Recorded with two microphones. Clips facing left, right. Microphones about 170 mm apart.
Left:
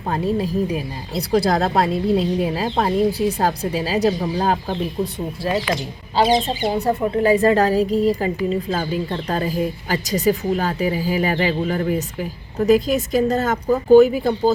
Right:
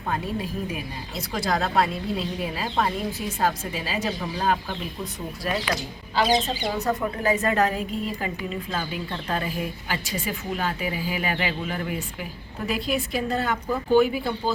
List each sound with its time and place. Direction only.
0.1 s a woman's voice: 35° left (ahead or behind)
6.7 s a woman's voice: 30° left (ahead or behind)